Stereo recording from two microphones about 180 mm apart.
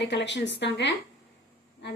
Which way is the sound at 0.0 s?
80° left.